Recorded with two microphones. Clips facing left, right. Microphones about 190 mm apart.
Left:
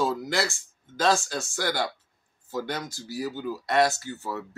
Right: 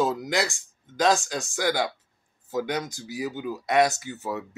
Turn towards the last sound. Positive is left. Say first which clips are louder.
# right 2 dB
turn(degrees=-15)  # may be behind; listen again after turning